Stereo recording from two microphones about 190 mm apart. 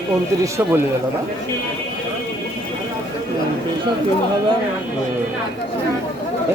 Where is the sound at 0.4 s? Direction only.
15° right (ahead or behind).